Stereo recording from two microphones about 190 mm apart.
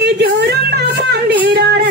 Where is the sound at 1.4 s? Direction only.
65° right (ahead or behind).